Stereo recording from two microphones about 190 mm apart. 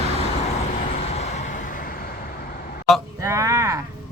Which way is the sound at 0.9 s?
35° left (ahead or behind).